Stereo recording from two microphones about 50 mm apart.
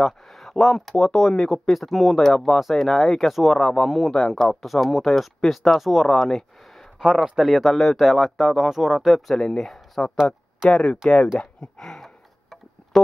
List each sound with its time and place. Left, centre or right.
0.0 s speech: centre
7.2 s speech: centre
10.7 s speech: centre
11.6 s a sound: centre